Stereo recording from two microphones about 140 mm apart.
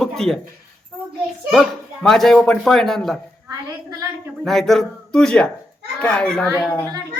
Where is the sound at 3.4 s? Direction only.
25° right (ahead or behind).